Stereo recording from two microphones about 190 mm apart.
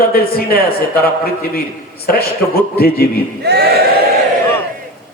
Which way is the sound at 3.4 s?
60° right (ahead or behind).